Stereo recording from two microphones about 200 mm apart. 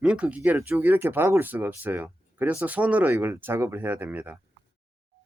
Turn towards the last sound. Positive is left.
turn(degrees=-10)  # may be behind; listen again after turning